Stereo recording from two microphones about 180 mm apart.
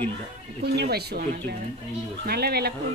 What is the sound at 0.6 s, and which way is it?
A man's voice, 65° right (ahead or behind).